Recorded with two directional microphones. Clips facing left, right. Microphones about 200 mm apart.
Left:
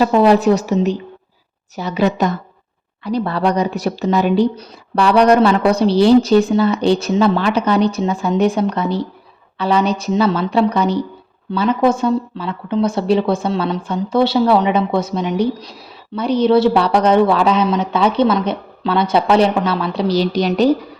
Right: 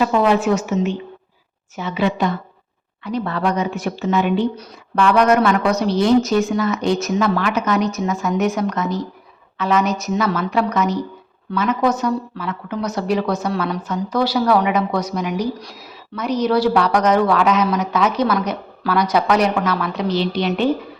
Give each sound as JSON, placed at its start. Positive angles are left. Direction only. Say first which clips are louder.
{"t": 0.0, "sound": "a man's voice", "louder": "left 4 dB", "side_deg": 35}